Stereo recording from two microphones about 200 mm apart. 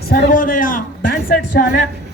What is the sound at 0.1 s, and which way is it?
Speech, 45° left (ahead or behind).